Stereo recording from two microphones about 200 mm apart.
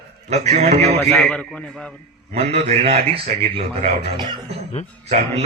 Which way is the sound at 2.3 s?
30° right (ahead or behind).